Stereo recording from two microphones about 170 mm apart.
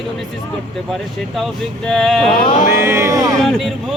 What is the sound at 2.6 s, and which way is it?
Speech, 15° right (ahead or behind).